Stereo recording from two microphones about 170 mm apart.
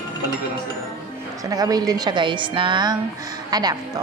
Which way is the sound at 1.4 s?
20° right (ahead or behind).